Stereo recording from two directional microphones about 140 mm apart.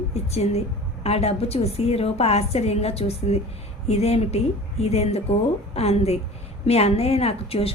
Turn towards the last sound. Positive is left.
turn(degrees=45)  # may be behind; listen again after turning